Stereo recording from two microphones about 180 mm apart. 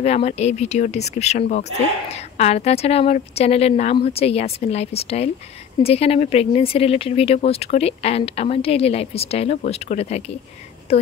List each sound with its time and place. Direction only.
0.0 s speech: 35° left (ahead or behind)